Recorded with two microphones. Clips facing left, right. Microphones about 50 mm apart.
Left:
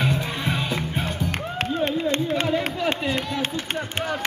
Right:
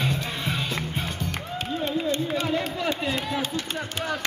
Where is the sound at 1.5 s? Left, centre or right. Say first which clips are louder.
Left 3 dB; left.